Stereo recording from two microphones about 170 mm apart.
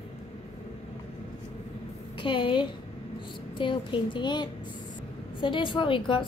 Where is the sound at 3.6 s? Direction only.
30° left (ahead or behind).